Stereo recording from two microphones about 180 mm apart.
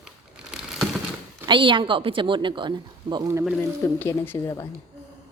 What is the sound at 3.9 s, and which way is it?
Speech, 10° left (ahead or behind).